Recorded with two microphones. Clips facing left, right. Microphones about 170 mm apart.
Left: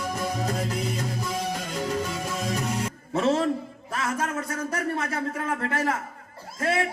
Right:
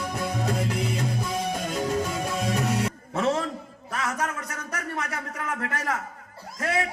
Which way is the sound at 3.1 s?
30° left (ahead or behind).